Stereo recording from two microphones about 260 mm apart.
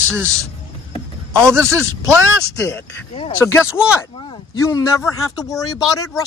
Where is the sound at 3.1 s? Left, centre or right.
Centre.